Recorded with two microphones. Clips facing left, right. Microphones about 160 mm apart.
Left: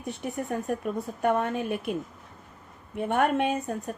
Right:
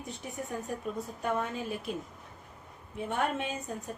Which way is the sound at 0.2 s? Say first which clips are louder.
Left 7 dB; 65° left (ahead or behind).